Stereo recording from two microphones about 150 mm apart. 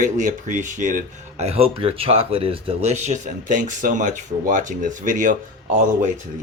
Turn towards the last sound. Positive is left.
turn(degrees=-60)  # may be behind; listen again after turning